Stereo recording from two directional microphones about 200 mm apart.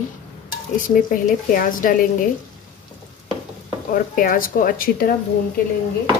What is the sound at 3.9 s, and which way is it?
Speech, 45° left (ahead or behind).